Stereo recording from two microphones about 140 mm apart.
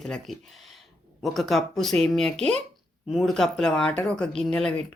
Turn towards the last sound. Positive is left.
turn(degrees=5)  # may be behind; listen again after turning